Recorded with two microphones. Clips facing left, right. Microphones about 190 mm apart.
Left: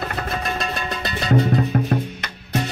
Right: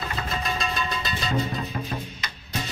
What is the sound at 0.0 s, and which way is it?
Music, 65° left (ahead or behind).